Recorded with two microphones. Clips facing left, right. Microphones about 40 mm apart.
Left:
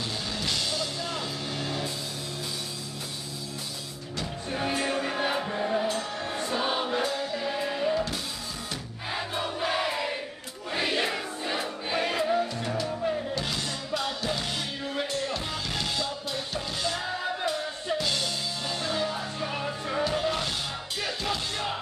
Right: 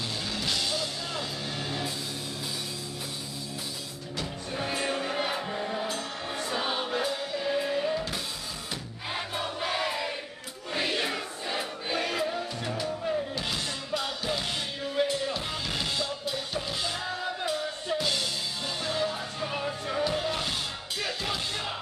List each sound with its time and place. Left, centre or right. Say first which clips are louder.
0.3 s music: right 1 dB; centre
4.5 s music: left 4 dB; centre
4.7 s music: right 1 dB; centre
6.7 s choir: left 2 dB; centre
7.3 s music: right 1 dB; centre
9.3 s music: left 3 dB; centre
13.3 s music: left 1 dB; centre